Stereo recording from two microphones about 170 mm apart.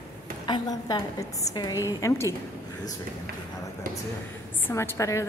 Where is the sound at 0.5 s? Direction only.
25° left (ahead or behind).